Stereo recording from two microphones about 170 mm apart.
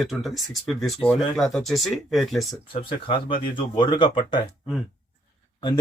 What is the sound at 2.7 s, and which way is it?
Speech, 30° left (ahead or behind).